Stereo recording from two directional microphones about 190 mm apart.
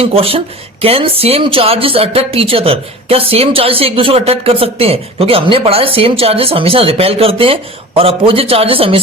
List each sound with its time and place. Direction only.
0.0 s speech: 30° right (ahead or behind)